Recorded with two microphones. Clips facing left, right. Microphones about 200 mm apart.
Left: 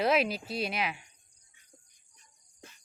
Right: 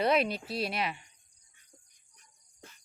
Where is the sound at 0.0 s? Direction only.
Centre (ahead or behind).